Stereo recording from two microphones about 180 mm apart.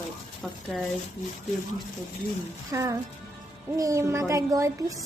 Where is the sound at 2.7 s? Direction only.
15° right (ahead or behind).